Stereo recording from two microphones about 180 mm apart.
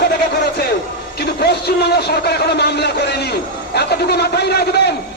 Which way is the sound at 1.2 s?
65° left (ahead or behind).